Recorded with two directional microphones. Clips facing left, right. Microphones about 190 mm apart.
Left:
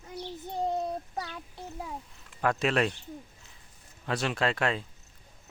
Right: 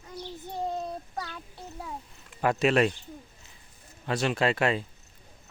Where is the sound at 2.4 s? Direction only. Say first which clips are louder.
Right 3 dB; 5° right (ahead or behind).